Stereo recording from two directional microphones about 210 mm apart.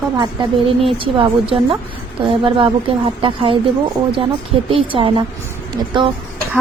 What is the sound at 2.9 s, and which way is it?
Speech, 25° right (ahead or behind).